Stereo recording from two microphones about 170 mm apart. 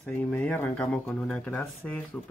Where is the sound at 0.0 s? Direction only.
5° left (ahead or behind).